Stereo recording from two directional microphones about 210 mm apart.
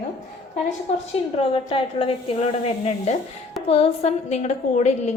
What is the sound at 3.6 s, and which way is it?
A woman's voice, 30° left (ahead or behind).